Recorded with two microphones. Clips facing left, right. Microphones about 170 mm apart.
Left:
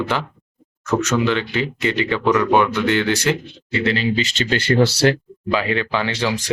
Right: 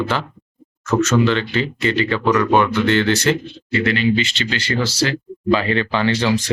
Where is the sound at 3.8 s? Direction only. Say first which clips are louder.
Right 2 dB; 30° left (ahead or behind); by 5.1 s 60° left (ahead or behind).